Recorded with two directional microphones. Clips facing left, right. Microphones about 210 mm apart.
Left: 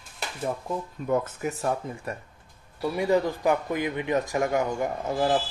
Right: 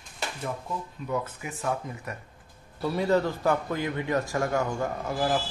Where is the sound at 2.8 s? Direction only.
15° left (ahead or behind).